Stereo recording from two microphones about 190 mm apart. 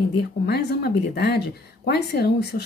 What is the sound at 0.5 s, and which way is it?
Speech, 60° left (ahead or behind).